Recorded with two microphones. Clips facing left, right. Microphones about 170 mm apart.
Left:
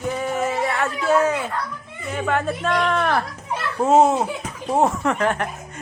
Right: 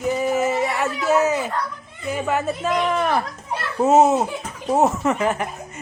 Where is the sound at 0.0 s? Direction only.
5° right (ahead or behind).